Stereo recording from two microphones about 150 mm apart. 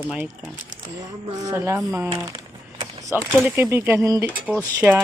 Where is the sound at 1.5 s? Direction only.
20° right (ahead or behind).